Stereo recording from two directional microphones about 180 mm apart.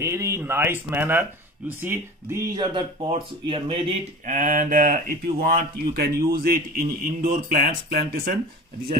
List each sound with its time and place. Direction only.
0.0 s speech: 15° right (ahead or behind)
4.3 s speech: 45° right (ahead or behind)